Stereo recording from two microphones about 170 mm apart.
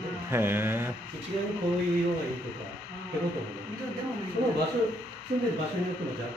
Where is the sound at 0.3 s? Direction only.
15° right (ahead or behind).